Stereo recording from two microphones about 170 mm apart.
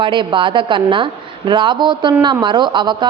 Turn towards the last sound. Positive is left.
turn(degrees=-25)  # may be behind; listen again after turning